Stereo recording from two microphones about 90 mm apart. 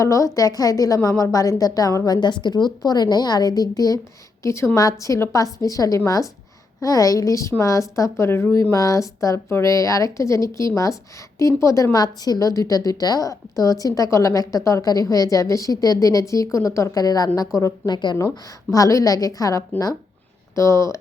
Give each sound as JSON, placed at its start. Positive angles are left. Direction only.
{"t": 0.0, "sound": "a woman's voice", "side_deg": 35}
{"t": 2.2, "sound": "a woman's voice", "side_deg": 55}
{"t": 4.4, "sound": "a woman's voice", "side_deg": 30}
{"t": 17.9, "sound": "speech", "side_deg": 55}
{"t": 18.2, "sound": "a woman's voice", "side_deg": 40}